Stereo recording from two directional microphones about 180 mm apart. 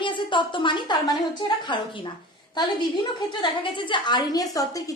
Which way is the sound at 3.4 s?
25° left (ahead or behind).